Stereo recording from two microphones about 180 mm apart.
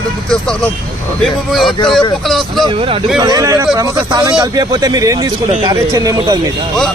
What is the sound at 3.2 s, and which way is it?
Speech, 20° right (ahead or behind).